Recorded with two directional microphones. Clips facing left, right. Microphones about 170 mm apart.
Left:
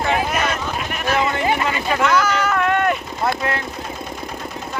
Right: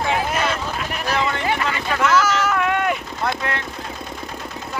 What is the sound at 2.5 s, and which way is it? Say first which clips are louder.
Vehicle: left 2 dB; 5° right (ahead or behind).